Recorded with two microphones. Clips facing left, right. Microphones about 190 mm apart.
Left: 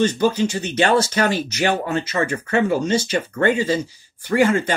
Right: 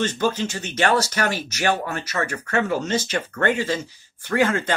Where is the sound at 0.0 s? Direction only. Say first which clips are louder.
Left 5 dB; 15° left (ahead or behind).